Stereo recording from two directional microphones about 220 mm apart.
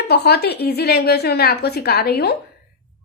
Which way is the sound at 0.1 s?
45° left (ahead or behind).